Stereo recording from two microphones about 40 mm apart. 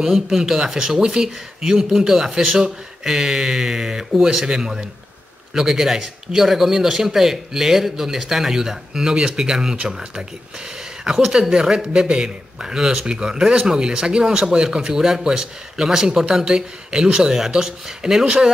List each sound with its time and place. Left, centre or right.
0.0 s speech: centre
11.2 s speech: centre
11.5 s a man's voice: centre